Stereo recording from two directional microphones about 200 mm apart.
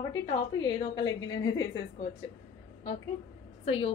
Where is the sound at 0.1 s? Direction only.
20° left (ahead or behind).